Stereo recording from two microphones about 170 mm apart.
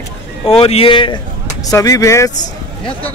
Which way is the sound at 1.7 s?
20° left (ahead or behind).